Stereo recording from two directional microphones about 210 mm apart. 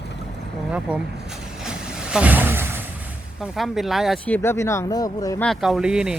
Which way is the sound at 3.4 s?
Centre (ahead or behind).